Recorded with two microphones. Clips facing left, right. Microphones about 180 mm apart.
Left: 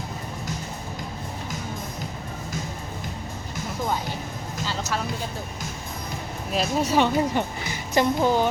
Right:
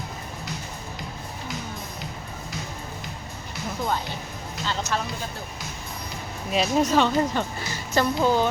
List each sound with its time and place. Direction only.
4.6 s music: 5° left (ahead or behind)
6.5 s speech: centre (ahead or behind)
6.9 s a woman's voice: 15° left (ahead or behind)